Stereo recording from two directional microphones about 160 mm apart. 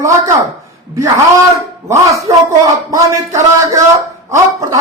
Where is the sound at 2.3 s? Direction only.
20° right (ahead or behind).